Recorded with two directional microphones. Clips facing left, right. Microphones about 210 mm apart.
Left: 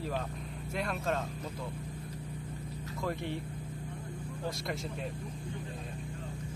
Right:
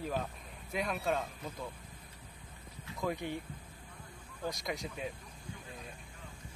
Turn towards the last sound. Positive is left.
turn(degrees=0)  # may be behind; listen again after turning